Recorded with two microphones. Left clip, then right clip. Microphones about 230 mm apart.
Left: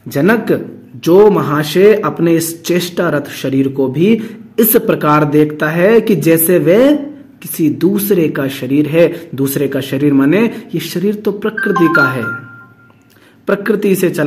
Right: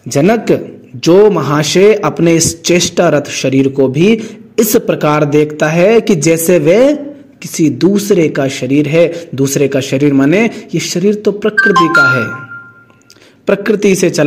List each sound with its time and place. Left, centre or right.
0.1 s speech: right
13.5 s speech: right